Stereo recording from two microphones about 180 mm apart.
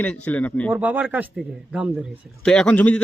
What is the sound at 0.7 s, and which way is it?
Speech, 10° right (ahead or behind).